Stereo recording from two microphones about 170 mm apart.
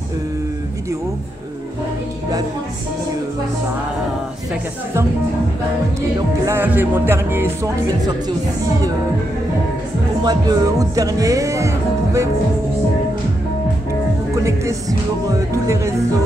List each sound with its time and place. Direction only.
6.4 s music: 15° right (ahead or behind)
10.2 s music: 20° right (ahead or behind)
14.3 s music: 20° right (ahead or behind)